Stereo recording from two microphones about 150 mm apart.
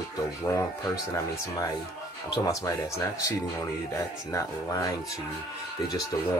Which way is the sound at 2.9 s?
20° left (ahead or behind).